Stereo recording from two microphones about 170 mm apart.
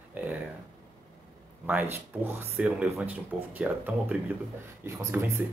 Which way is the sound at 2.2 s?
15° right (ahead or behind).